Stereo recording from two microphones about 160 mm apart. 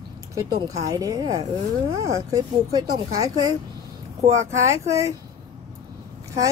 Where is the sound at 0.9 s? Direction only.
20° right (ahead or behind).